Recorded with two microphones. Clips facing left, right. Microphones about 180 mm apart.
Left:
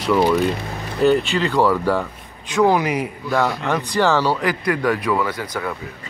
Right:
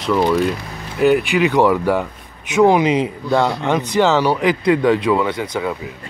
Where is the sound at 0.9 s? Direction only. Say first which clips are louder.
Right 2 dB; 15° right (ahead or behind).